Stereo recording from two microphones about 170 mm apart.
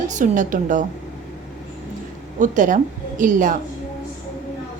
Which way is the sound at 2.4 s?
50° right (ahead or behind).